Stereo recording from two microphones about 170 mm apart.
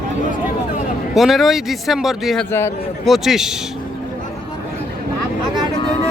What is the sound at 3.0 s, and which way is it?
Speech, centre (ahead or behind).